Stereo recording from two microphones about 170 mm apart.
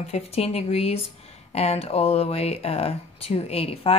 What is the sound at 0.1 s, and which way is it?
A woman's voice, 35° left (ahead or behind).